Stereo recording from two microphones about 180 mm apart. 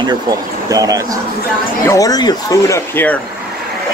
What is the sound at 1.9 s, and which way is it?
Speech, 20° left (ahead or behind).